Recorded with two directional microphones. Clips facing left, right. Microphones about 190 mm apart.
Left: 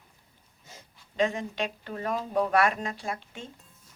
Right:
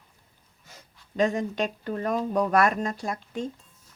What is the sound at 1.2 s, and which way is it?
Speech, 45° right (ahead or behind).